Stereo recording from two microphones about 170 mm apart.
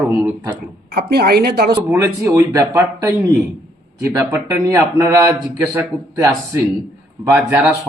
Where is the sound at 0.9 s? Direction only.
70° right (ahead or behind).